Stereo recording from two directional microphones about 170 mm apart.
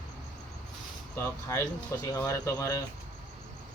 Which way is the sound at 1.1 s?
15° left (ahead or behind).